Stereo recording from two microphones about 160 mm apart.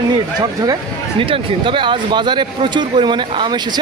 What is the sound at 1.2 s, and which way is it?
Speech, 30° right (ahead or behind).